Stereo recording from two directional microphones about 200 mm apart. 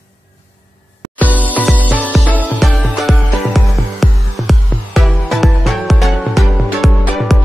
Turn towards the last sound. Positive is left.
turn(degrees=0)  # may be behind; listen again after turning